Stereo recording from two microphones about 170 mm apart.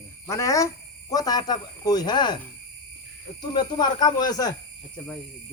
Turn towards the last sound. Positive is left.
turn(degrees=25)  # may be behind; listen again after turning